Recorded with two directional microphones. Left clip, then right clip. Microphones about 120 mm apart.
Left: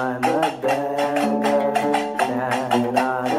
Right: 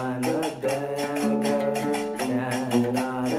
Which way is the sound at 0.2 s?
15° right (ahead or behind).